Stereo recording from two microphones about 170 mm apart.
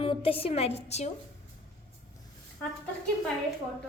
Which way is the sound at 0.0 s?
35° left (ahead or behind).